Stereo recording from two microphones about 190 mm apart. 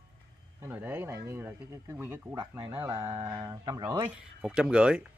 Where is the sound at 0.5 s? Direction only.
10° right (ahead or behind).